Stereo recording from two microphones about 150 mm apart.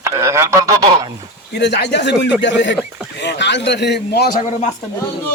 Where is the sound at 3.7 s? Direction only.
90° left; by 4.7 s 70° left (ahead or behind).